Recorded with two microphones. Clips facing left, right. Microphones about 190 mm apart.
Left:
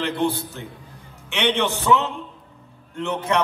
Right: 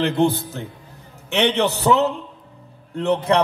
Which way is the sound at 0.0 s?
45° right (ahead or behind).